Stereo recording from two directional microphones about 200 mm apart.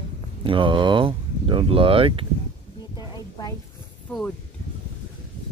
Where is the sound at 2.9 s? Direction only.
20° left (ahead or behind).